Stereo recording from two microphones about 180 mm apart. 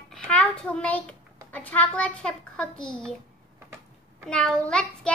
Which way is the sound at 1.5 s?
10° left (ahead or behind).